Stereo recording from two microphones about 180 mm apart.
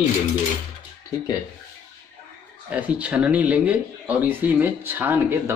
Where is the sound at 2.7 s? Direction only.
5° right (ahead or behind).